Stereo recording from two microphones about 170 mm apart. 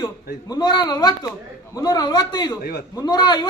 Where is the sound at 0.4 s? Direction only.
25° left (ahead or behind).